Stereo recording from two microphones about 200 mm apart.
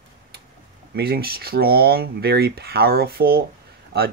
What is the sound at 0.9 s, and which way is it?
Speech, 50° right (ahead or behind).